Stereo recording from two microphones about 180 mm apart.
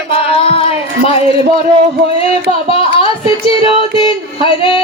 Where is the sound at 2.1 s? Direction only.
30° left (ahead or behind).